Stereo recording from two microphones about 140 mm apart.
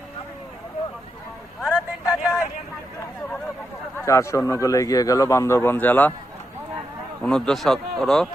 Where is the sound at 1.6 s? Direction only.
5° right (ahead or behind).